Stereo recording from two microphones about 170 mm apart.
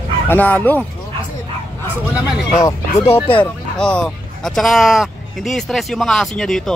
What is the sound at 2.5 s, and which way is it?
Speech, 20° left (ahead or behind).